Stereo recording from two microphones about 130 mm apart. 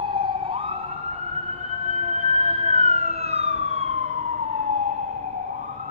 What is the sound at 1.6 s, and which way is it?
Emergency vehicle, 60° right (ahead or behind).